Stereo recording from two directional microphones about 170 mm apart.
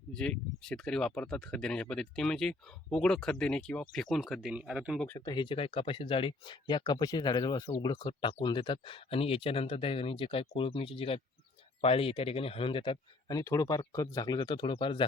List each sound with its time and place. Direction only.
0.1 s speech: 5° left (ahead or behind)
5.0 s speech: 20° left (ahead or behind)